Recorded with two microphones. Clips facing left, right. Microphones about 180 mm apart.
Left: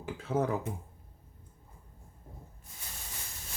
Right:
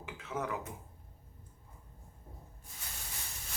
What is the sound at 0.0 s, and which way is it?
Speech, 35° left (ahead or behind).